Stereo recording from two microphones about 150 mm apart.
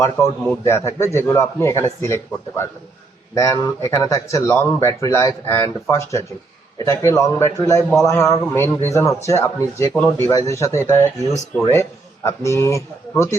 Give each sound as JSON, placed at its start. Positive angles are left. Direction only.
{"t": 0.2, "sound": "a man's voice", "side_deg": 15}